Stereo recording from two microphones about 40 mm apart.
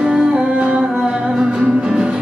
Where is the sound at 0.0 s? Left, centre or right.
Right.